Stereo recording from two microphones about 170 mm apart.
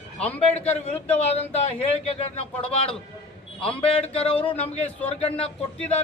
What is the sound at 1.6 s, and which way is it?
Speech, 40° left (ahead or behind).